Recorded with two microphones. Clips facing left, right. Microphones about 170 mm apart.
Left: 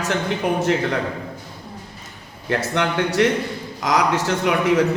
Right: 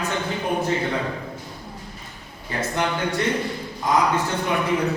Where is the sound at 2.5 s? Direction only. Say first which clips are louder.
Left 3 dB; 75° left (ahead or behind).